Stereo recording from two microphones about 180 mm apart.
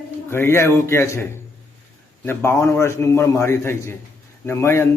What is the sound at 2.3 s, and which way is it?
A man's voice, 15° left (ahead or behind).